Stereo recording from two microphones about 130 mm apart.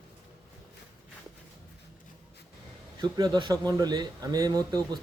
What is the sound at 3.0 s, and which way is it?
Speech, 35° right (ahead or behind).